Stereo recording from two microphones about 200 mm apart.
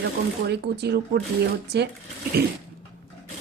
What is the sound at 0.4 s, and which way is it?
Speech, 55° right (ahead or behind).